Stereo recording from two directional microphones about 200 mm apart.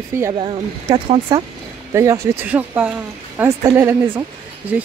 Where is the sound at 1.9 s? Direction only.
15° right (ahead or behind).